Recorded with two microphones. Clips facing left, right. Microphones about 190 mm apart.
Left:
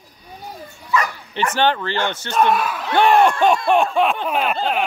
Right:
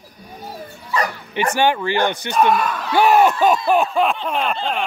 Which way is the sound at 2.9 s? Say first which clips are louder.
Even; 5° right (ahead or behind).